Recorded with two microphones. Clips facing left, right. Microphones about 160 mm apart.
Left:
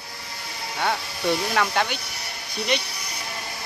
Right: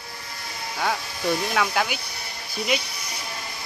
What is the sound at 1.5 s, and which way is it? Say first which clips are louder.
Speech: left 1 dB; centre (ahead or behind).